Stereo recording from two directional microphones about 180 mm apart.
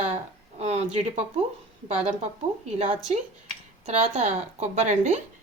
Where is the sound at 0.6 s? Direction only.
35° right (ahead or behind).